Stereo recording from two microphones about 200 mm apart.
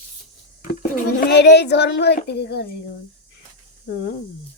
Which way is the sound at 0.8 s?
50° left (ahead or behind).